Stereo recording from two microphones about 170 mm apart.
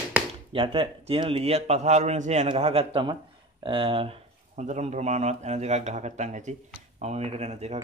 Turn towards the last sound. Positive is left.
turn(degrees=-40)  # may be behind; listen again after turning